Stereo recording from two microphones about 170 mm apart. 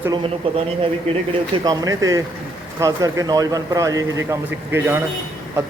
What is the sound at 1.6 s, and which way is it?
A man's voice, 20° right (ahead or behind).